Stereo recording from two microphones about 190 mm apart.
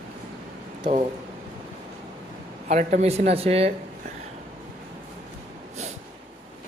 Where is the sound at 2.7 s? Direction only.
40° right (ahead or behind).